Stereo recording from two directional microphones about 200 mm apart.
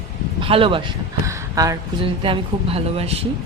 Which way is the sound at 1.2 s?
15° right (ahead or behind).